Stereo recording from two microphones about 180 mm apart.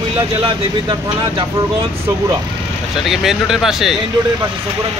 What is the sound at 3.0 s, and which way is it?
Speech, centre (ahead or behind).